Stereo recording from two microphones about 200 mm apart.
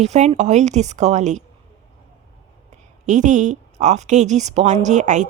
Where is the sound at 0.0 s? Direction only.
35° right (ahead or behind).